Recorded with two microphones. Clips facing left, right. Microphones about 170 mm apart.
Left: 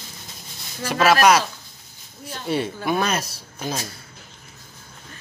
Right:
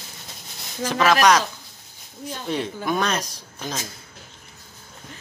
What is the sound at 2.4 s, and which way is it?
Speech, 5° left (ahead or behind).